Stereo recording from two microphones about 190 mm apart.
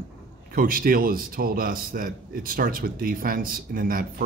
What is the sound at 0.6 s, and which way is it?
A man's voice, 50° right (ahead or behind).